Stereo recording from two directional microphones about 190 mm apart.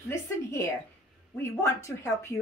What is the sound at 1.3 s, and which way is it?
A woman's voice, 15° left (ahead or behind).